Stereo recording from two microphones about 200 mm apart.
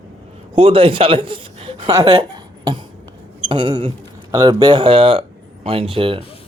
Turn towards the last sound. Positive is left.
turn(degrees=-25)  # may be behind; listen again after turning